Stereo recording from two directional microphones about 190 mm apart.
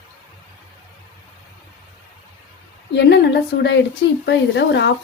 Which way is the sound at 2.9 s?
60° left (ahead or behind).